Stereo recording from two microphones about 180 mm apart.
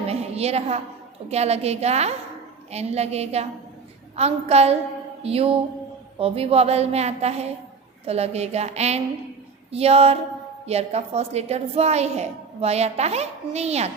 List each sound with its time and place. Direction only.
0.1 s a woman's voice: 35° right (ahead or behind)